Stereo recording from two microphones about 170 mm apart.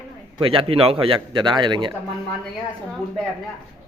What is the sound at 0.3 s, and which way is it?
A man's voice, 30° right (ahead or behind).